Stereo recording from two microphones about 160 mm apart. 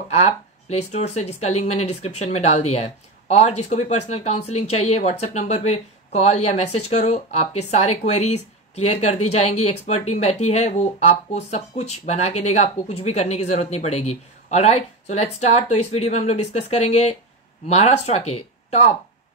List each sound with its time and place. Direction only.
0.1 s speech: 40° left (ahead or behind)